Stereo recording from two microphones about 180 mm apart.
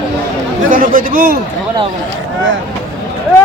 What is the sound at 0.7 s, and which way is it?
Speech, 50° right (ahead or behind).